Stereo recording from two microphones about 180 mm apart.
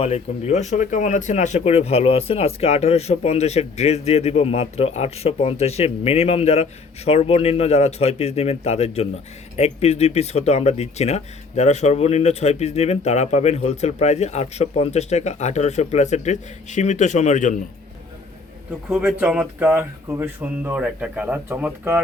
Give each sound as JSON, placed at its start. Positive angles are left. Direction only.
{"t": 0.0, "sound": "speech", "side_deg": 35}
{"t": 18.9, "sound": "speech", "side_deg": -5}